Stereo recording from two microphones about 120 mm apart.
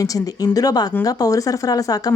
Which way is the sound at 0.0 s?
30° left (ahead or behind).